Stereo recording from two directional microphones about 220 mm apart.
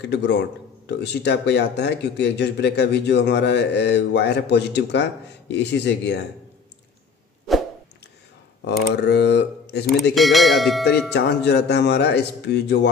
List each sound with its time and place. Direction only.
0.0 s speech: 50° left (ahead or behind)
8.9 s speech: 50° left (ahead or behind)
10.1 s speech: centre (ahead or behind)
11.1 s speech: 50° left (ahead or behind)